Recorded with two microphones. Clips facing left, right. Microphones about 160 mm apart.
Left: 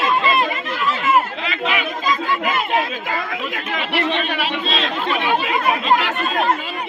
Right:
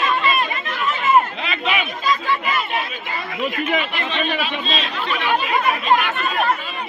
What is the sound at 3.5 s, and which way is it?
A man's voice, 80° left.